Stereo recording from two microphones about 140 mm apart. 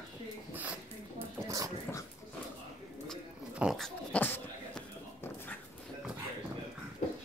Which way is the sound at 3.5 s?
Centre (ahead or behind).